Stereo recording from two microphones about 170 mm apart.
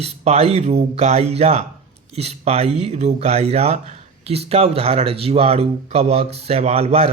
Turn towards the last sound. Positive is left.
turn(degrees=-40)  # may be behind; listen again after turning